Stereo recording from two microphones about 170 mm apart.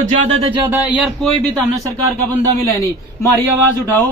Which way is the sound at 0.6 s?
10° right (ahead or behind).